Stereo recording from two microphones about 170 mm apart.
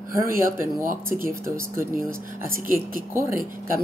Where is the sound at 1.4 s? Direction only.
15° right (ahead or behind).